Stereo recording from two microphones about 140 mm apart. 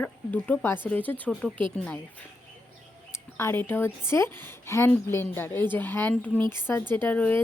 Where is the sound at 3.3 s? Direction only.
15° left (ahead or behind).